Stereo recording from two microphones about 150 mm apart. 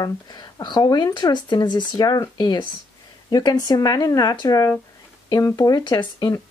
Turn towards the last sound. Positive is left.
turn(degrees=30)  # may be behind; listen again after turning